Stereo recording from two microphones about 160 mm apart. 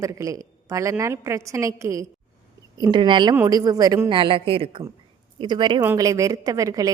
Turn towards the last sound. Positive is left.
turn(degrees=-20)  # may be behind; listen again after turning